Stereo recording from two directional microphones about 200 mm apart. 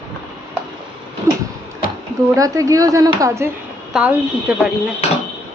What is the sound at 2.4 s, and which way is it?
Speech, 15° right (ahead or behind).